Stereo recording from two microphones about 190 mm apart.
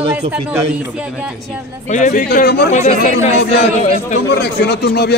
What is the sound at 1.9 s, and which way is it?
Speech, 40° left (ahead or behind).